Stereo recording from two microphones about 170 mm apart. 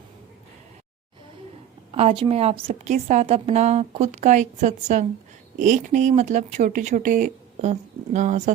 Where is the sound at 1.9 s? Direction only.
35° right (ahead or behind).